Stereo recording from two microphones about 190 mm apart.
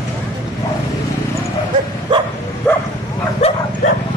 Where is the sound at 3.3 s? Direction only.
35° left (ahead or behind).